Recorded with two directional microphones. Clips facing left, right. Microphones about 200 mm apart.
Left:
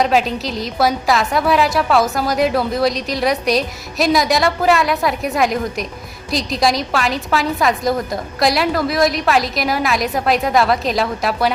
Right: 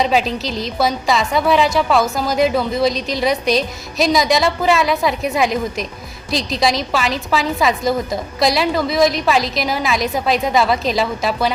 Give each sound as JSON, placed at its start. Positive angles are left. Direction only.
{"t": 0.0, "sound": "a woman's voice", "side_deg": 0}